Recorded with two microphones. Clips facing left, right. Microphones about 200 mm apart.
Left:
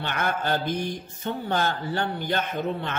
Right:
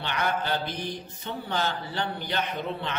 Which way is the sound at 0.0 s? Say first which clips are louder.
Left 1 dB; 50° left (ahead or behind).